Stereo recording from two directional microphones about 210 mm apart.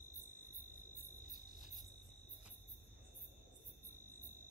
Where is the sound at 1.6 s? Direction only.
Centre (ahead or behind).